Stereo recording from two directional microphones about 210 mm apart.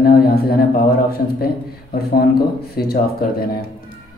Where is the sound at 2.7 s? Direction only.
45° left (ahead or behind).